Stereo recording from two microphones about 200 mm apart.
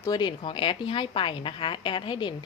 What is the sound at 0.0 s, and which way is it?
A woman's voice, 20° left (ahead or behind).